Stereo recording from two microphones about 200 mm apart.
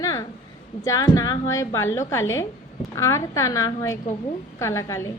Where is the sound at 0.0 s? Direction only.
20° left (ahead or behind).